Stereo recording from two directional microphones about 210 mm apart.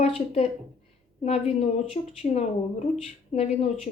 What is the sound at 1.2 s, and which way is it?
Speech, 30° left (ahead or behind).